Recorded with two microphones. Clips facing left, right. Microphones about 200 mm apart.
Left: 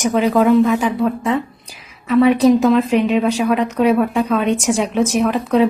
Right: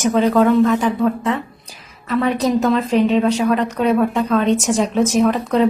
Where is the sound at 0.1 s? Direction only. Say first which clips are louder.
Left 1 dB; 10° left (ahead or behind).